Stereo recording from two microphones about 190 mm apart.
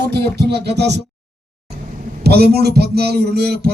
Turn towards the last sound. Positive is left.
turn(degrees=-55)  # may be behind; listen again after turning